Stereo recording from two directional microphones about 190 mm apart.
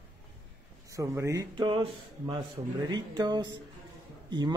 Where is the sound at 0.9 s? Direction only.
15° right (ahead or behind).